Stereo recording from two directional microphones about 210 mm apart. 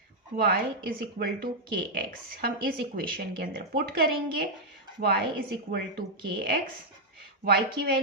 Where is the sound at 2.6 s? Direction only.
45° right (ahead or behind).